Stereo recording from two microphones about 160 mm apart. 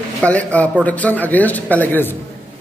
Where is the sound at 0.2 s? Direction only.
10° left (ahead or behind).